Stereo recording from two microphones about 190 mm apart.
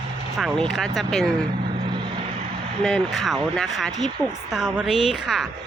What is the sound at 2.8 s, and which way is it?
A woman's voice, centre (ahead or behind).